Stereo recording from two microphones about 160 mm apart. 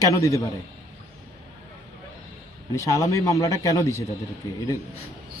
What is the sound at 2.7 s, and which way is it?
Speech, 20° left (ahead or behind).